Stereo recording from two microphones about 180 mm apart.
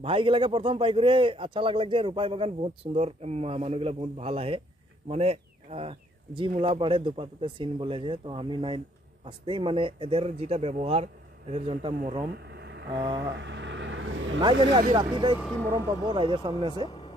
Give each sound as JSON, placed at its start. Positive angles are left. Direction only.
{"t": 0.0, "sound": "a man's voice", "side_deg": -30}
{"t": 12.4, "sound": "a sound", "side_deg": -75}
{"t": 12.9, "sound": "speech", "side_deg": -25}
{"t": 13.3, "sound": "vehicle", "side_deg": -90}
{"t": 14.9, "sound": "speech", "side_deg": -25}
{"t": 15.3, "sound": "speech", "side_deg": 0}
{"t": 16.1, "sound": "speech", "side_deg": -30}